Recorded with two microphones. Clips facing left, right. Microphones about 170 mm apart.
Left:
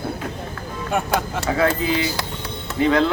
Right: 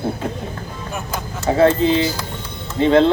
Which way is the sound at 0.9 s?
75° left (ahead or behind).